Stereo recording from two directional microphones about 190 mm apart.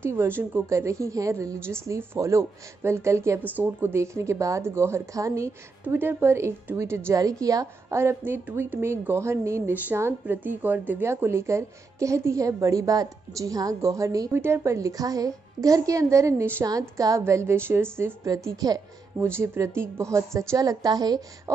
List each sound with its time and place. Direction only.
0.0 s a woman's voice: 10° right (ahead or behind)